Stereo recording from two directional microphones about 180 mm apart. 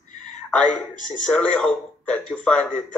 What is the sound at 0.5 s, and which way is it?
A woman's voice, 5° left (ahead or behind).